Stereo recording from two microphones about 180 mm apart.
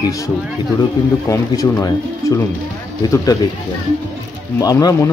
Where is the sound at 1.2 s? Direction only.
15° left (ahead or behind).